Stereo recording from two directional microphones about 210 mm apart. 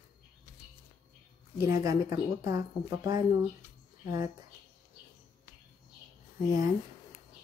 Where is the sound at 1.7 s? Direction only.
15° right (ahead or behind).